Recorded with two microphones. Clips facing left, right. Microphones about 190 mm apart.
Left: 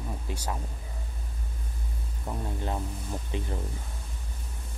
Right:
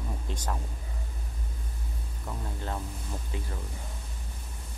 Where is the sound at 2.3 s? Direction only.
15° left (ahead or behind).